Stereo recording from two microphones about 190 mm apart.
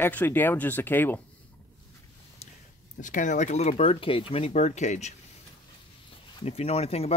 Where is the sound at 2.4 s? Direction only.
35° left (ahead or behind).